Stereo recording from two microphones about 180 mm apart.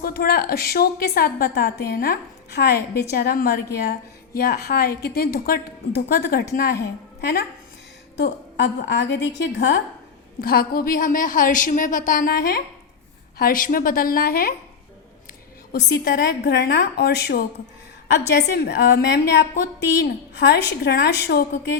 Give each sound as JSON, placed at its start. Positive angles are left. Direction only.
{"t": 0.0, "sound": "a woman's voice", "side_deg": 55}
{"t": 8.1, "sound": "a woman's voice", "side_deg": 70}
{"t": 10.4, "sound": "a woman's voice", "side_deg": 55}
{"t": 15.7, "sound": "a woman's voice", "side_deg": 65}